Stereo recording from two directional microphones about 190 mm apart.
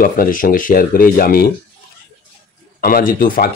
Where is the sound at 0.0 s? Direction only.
45° left (ahead or behind).